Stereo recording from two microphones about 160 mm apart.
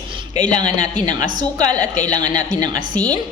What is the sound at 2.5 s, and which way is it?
Speech, 25° right (ahead or behind).